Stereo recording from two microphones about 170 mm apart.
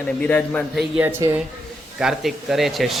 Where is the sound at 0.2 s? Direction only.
10° left (ahead or behind).